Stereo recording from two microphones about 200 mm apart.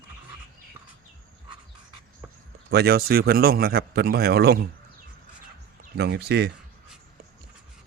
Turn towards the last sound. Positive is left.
turn(degrees=-55)  # may be behind; listen again after turning